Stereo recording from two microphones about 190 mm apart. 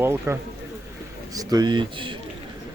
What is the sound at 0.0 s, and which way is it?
Speech, 15° right (ahead or behind).